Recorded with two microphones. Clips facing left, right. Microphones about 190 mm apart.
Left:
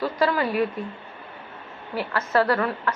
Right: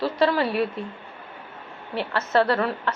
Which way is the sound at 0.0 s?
30° right (ahead or behind).